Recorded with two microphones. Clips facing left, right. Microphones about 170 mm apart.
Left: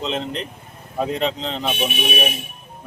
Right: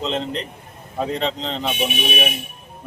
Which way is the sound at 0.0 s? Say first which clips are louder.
Right 1 dB; 5° left (ahead or behind).